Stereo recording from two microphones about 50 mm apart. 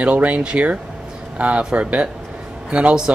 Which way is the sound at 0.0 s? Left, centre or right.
Right.